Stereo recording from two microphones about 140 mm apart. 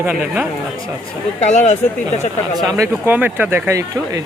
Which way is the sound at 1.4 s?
55° left (ahead or behind).